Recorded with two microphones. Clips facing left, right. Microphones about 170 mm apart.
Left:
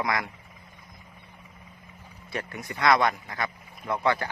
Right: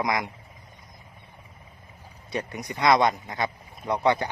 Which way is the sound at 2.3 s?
20° right (ahead or behind).